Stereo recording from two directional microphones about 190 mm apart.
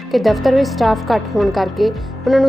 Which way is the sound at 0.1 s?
Centre (ahead or behind).